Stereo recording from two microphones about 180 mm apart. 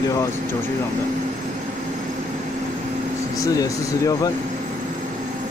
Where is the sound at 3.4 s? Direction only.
20° left (ahead or behind).